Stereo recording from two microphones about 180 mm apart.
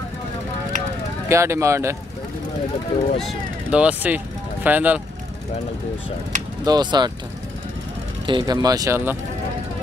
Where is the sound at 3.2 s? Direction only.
5° right (ahead or behind).